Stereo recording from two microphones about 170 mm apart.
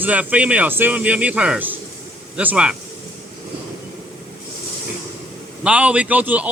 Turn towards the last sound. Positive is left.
turn(degrees=-10)  # may be behind; listen again after turning